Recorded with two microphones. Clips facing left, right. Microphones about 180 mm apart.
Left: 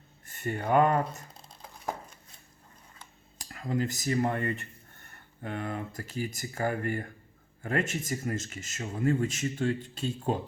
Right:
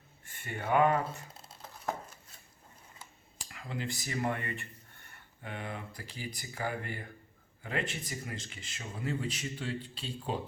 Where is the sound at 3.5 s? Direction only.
45° left (ahead or behind).